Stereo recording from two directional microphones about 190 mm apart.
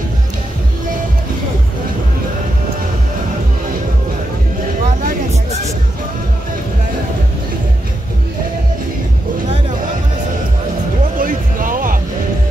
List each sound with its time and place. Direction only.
5.0 s music: 35° right (ahead or behind)
11.1 s music: 45° right (ahead or behind)